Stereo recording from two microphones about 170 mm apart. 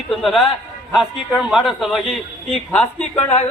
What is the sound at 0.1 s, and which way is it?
Speech, centre (ahead or behind).